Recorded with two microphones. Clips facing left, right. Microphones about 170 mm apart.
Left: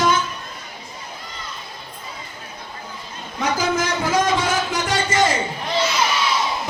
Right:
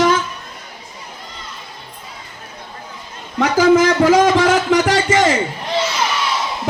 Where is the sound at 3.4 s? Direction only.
75° right (ahead or behind).